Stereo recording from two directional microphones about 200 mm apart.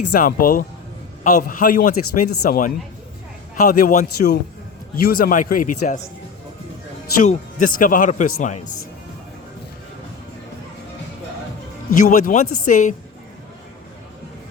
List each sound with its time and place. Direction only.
0.1 s a man's voice: 45° left (ahead or behind)
4.9 s a man's voice: 45° left (ahead or behind)
7.2 s a man's voice: 40° left (ahead or behind)
11.9 s speech: 40° left (ahead or behind)